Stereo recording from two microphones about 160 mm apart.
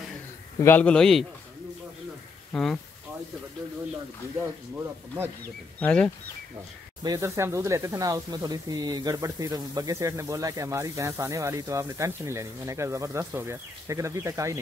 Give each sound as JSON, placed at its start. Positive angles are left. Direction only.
{"t": 0.6, "sound": "a man's voice", "side_deg": 10}
{"t": 2.5, "sound": "speech", "side_deg": 5}
{"t": 4.7, "sound": "speech", "side_deg": -10}
{"t": 5.8, "sound": "a man's voice", "side_deg": 10}
{"t": 7.0, "sound": "speech", "side_deg": -20}